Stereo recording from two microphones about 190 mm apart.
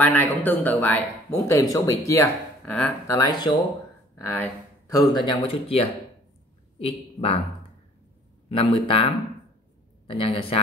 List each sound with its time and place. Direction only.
0.0 s speech: 10° left (ahead or behind)
3.2 s a woman's voice: 20° left (ahead or behind)
8.5 s speech: 30° left (ahead or behind)